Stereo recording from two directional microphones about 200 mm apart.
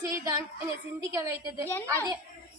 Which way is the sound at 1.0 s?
15° right (ahead or behind).